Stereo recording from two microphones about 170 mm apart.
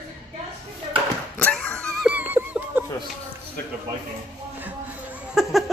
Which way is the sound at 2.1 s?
10° right (ahead or behind).